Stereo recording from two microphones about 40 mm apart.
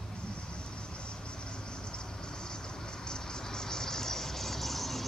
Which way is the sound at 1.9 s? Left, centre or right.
Centre.